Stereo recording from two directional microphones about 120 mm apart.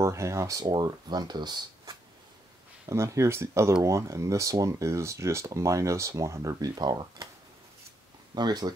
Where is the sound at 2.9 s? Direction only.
25° right (ahead or behind).